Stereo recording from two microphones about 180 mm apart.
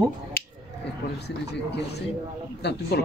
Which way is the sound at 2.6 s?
65° left (ahead or behind).